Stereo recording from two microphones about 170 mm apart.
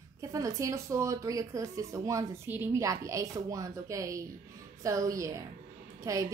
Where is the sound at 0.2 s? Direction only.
20° right (ahead or behind).